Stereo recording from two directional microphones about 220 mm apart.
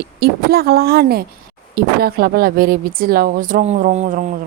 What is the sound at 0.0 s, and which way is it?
A woman's voice, 45° right (ahead or behind).